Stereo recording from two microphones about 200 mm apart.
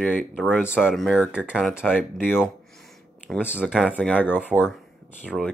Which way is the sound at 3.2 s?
10° left (ahead or behind).